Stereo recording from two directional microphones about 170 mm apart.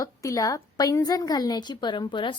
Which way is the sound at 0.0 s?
20° left (ahead or behind).